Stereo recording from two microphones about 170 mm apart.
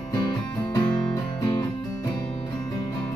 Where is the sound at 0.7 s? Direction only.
25° left (ahead or behind).